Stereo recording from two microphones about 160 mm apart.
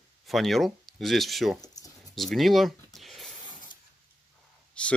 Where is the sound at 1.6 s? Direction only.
25° left (ahead or behind).